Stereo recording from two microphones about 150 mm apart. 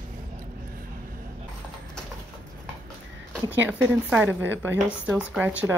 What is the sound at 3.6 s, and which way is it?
A woman's voice, 10° right (ahead or behind).